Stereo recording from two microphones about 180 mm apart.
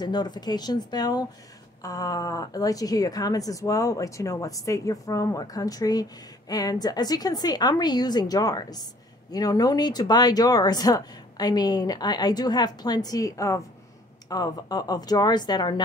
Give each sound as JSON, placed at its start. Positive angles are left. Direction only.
{"t": 0.0, "sound": "speech", "side_deg": 25}